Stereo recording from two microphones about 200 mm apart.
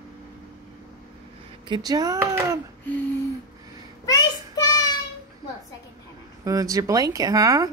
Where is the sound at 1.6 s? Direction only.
20° right (ahead or behind).